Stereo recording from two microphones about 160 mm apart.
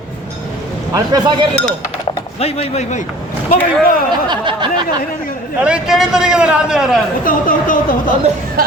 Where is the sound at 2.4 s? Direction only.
40° left (ahead or behind).